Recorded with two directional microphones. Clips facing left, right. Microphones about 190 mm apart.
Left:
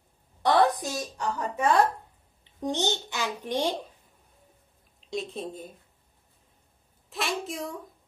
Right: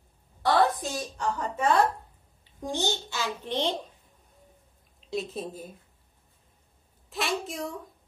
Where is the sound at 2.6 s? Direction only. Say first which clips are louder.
Left 2 dB; 20° left (ahead or behind).